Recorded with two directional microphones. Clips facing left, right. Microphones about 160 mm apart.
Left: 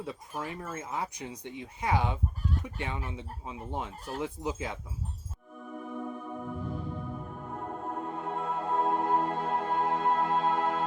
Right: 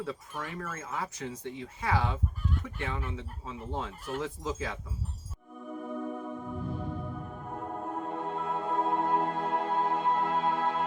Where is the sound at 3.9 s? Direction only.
35° left (ahead or behind).